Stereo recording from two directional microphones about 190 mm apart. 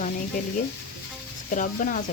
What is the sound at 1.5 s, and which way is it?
Speech, 40° left (ahead or behind).